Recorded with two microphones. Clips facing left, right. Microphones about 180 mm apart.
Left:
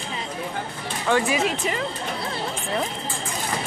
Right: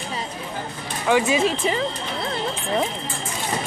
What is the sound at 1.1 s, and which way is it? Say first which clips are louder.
Speech: right 3 dB; 20° right (ahead or behind).